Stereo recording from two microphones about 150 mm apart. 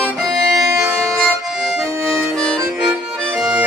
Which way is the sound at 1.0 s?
5° left (ahead or behind).